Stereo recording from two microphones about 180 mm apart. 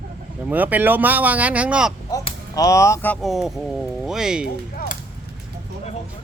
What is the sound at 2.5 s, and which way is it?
Speech, 20° left (ahead or behind).